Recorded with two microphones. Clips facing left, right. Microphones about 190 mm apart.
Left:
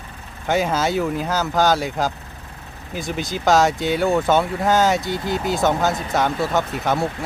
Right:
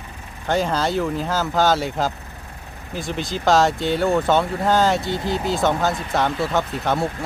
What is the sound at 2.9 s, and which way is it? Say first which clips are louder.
Speech: even; 5° left (ahead or behind).